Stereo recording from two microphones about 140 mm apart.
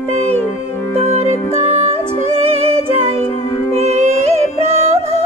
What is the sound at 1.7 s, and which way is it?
Music, 45° right (ahead or behind).